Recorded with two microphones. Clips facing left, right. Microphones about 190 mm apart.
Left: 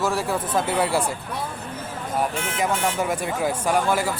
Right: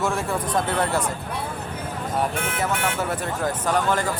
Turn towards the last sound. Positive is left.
turn(degrees=10)  # may be behind; listen again after turning